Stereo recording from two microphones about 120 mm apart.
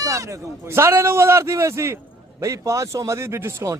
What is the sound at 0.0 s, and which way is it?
A man's voice, 25° right (ahead or behind).